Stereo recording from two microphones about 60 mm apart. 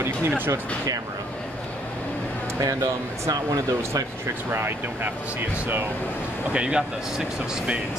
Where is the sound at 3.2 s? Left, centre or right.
Right.